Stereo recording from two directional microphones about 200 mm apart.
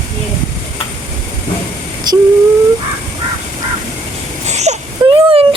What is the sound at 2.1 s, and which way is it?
Speech, 20° right (ahead or behind).